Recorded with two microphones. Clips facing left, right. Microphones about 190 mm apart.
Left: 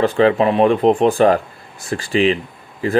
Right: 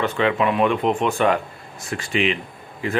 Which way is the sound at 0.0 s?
35° left (ahead or behind).